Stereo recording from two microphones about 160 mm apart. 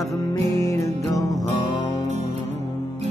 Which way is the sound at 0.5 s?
20° left (ahead or behind).